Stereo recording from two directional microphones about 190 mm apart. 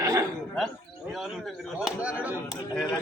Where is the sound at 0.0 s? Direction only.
15° right (ahead or behind).